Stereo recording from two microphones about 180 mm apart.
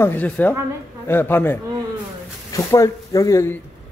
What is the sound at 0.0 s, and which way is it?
Speech, 10° left (ahead or behind).